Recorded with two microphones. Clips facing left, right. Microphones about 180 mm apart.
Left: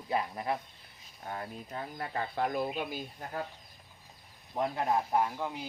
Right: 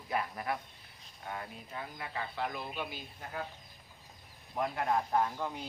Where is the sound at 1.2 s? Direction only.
35° left (ahead or behind).